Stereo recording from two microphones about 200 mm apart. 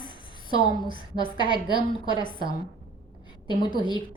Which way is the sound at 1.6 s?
20° left (ahead or behind).